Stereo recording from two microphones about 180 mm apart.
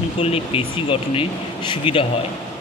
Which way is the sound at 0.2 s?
35° left (ahead or behind).